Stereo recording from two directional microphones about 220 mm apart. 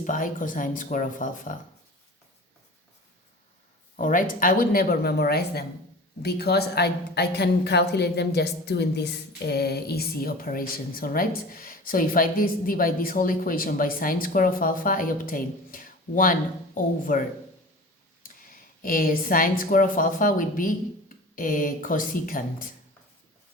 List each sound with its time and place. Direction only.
0.0 s speech: 35° left (ahead or behind)
3.9 s a woman's voice: 35° left (ahead or behind)